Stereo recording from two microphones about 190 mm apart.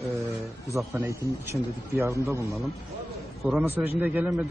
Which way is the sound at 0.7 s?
15° right (ahead or behind).